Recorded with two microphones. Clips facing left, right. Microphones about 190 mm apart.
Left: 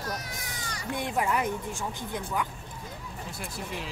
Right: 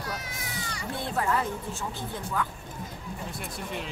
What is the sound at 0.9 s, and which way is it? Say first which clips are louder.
A woman's voice: even; 15° left (ahead or behind).